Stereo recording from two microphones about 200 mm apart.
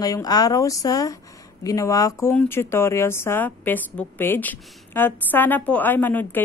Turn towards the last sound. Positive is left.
turn(degrees=10)  # may be behind; listen again after turning